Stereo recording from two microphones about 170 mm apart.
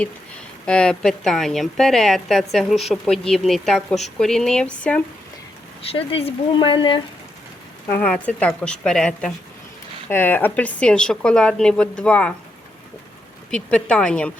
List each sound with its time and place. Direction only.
0.6 s a woman's voice: 5° left (ahead or behind)
5.8 s speech: 35° left (ahead or behind)
7.9 s a woman's voice: 10° left (ahead or behind)
13.5 s a woman's voice: 5° left (ahead or behind)